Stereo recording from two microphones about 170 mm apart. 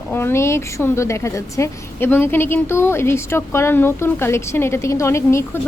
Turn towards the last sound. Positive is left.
turn(degrees=15)  # may be behind; listen again after turning